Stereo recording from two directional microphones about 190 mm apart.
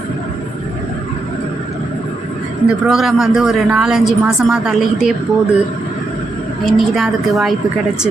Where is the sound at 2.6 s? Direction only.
Centre (ahead or behind).